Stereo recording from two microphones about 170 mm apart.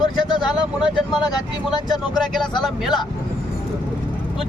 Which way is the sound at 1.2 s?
25° left (ahead or behind).